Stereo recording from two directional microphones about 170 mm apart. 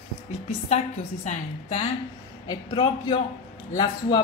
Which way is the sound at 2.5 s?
25° left (ahead or behind).